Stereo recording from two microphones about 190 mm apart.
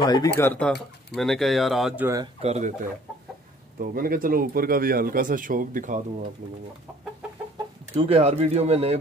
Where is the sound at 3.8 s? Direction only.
50° right (ahead or behind).